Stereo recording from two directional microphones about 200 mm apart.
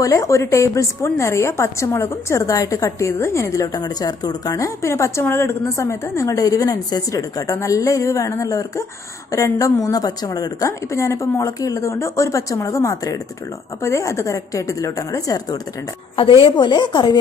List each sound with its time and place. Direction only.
0.0 s a woman's voice: 15° left (ahead or behind)